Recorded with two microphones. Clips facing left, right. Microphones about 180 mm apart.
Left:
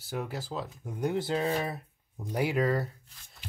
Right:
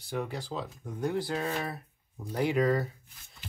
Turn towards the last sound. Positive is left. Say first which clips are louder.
# left 1 dB
turn(degrees=0)  # may be behind; listen again after turning